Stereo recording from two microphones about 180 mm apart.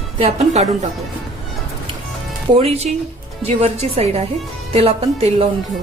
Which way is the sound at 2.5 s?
35° right (ahead or behind).